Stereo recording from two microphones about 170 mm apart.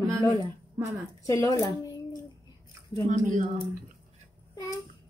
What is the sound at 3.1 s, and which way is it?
Speech, 45° right (ahead or behind).